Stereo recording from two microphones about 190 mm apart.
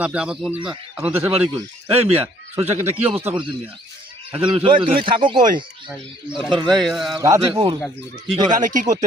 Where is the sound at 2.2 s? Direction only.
30° right (ahead or behind).